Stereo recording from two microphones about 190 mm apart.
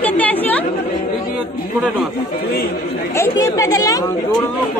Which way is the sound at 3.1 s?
15° left (ahead or behind).